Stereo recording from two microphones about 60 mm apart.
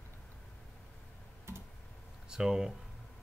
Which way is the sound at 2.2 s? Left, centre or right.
Centre.